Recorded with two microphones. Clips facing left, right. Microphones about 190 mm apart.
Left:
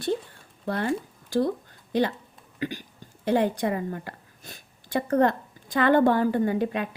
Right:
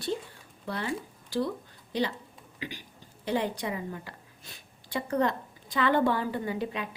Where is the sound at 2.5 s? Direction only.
50° left (ahead or behind).